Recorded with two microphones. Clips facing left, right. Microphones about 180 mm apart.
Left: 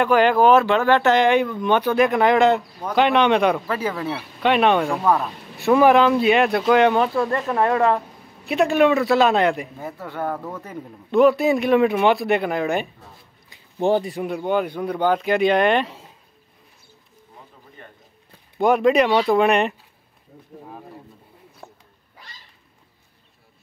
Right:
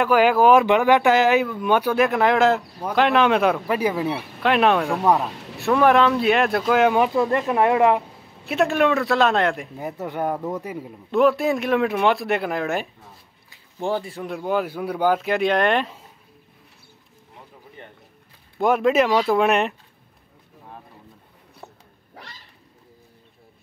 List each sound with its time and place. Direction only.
0.0 s speech: 5° right (ahead or behind)
3.6 s speech: 15° right (ahead or behind)
4.4 s speech: centre (ahead or behind)
7.2 s speech: 20° right (ahead or behind)
8.5 s speech: centre (ahead or behind)
9.8 s speech: 20° right (ahead or behind); by 12.8 s centre (ahead or behind)
13.5 s a sound: 20° left (ahead or behind)
14.2 s speech: centre (ahead or behind)
18.6 s speech: centre (ahead or behind)